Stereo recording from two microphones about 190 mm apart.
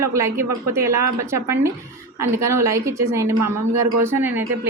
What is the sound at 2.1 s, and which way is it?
A woman's voice, 15° right (ahead or behind).